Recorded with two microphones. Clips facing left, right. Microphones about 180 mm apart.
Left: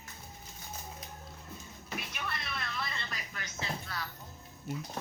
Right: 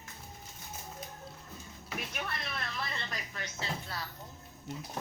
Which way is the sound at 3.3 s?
30° right (ahead or behind).